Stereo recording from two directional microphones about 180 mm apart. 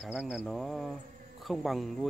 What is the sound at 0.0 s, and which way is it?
Speech, 5° right (ahead or behind).